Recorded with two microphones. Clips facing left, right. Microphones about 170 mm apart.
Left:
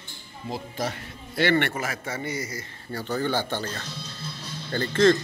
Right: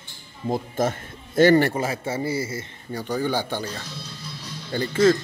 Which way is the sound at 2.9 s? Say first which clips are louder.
Right 2 dB; 15° right (ahead or behind).